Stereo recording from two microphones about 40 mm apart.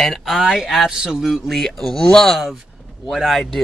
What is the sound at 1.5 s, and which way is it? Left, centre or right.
Speech, centre.